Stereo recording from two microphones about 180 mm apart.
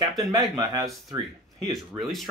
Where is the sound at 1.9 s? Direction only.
Centre (ahead or behind).